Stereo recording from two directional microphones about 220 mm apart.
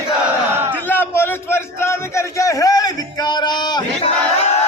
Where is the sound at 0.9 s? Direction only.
10° left (ahead or behind).